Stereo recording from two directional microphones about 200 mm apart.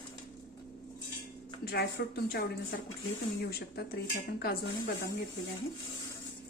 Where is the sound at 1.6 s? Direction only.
50° left (ahead or behind).